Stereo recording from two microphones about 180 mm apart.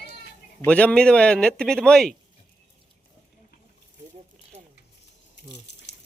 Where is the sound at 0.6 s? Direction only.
5° left (ahead or behind).